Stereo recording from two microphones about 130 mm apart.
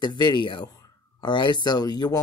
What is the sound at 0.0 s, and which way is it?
Speech, 35° left (ahead or behind).